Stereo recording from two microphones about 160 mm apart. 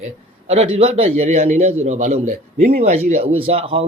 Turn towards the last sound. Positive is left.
turn(degrees=-35)  # may be behind; listen again after turning